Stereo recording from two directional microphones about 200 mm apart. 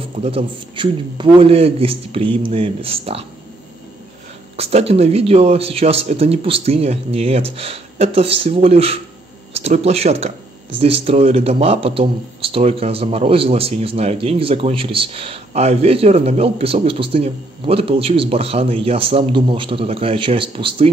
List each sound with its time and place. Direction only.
0.2 s a man's voice: 30° right (ahead or behind)
4.6 s a man's voice: 30° right (ahead or behind)